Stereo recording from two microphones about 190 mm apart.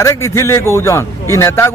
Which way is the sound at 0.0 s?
15° left (ahead or behind).